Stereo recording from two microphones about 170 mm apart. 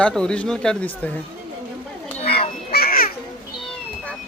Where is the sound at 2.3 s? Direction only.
65° left (ahead or behind).